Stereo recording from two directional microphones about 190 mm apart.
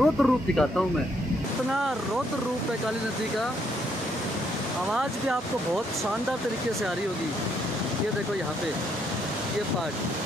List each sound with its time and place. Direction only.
0.0 s speech: centre (ahead or behind)